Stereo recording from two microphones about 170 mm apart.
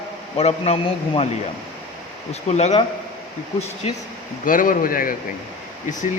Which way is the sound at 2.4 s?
40° left (ahead or behind).